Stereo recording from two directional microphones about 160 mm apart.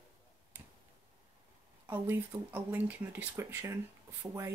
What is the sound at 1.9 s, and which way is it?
Speech, 10° right (ahead or behind).